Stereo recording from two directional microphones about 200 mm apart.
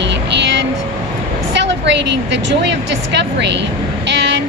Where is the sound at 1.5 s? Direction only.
60° right (ahead or behind).